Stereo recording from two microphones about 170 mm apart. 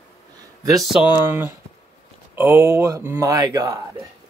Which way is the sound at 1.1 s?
10° right (ahead or behind).